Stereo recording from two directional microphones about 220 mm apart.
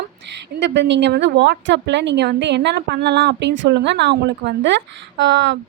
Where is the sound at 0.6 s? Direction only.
55° right (ahead or behind).